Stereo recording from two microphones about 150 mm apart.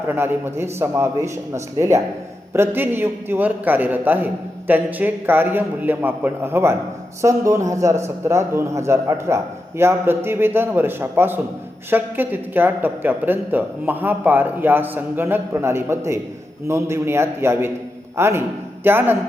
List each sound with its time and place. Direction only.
0.1 s a man's voice: 15° right (ahead or behind)